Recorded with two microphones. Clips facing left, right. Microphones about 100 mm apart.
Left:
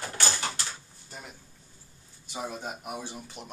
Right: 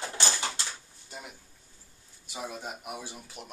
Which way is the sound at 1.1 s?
10° right (ahead or behind).